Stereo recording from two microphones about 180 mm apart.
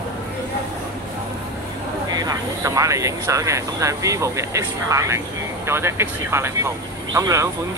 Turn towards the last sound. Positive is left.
turn(degrees=-15)  # may be behind; listen again after turning